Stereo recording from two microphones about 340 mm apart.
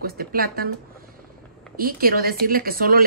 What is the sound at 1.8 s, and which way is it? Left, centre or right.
A woman's voice, right.